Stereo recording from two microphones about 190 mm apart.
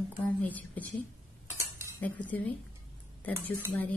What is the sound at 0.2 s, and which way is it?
Speech, 10° left (ahead or behind).